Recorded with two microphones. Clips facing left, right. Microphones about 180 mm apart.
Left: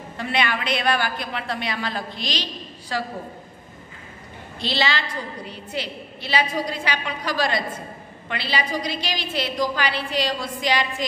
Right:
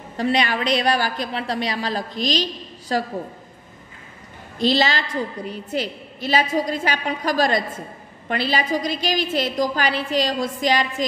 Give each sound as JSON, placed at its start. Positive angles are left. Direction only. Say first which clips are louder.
{"t": 0.2, "sound": "a woman's voice", "louder": "right 4 dB", "side_deg": -40}
{"t": 4.6, "sound": "a woman's voice", "louder": "right 5 dB", "side_deg": -45}